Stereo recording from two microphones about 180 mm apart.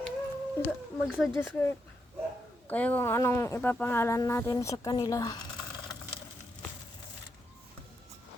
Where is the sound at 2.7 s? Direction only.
10° left (ahead or behind).